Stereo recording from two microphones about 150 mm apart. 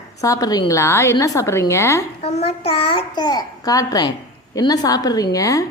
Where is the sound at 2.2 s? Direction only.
45° left (ahead or behind); by 5.6 s 20° left (ahead or behind).